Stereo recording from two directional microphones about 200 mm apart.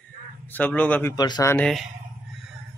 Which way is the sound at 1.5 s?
5° left (ahead or behind).